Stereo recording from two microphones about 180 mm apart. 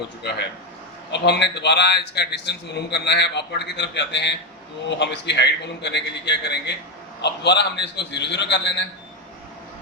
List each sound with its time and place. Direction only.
0.2 s a man's voice: 70° left (ahead or behind)